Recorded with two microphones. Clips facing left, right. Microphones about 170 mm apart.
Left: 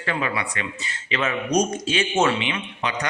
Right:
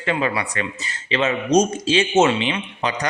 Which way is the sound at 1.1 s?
25° right (ahead or behind).